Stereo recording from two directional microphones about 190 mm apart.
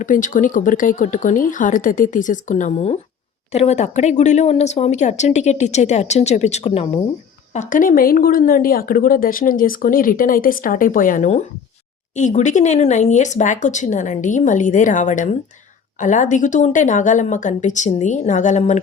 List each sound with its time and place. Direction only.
0.0 s a woman's voice: 45° left (ahead or behind)
7.5 s a woman's voice: 40° left (ahead or behind)